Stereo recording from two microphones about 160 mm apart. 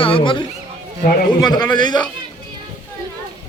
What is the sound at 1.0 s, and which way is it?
Speech, 65° left (ahead or behind).